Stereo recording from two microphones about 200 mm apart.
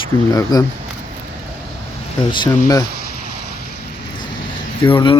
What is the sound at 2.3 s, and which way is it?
Speech, 25° left (ahead or behind).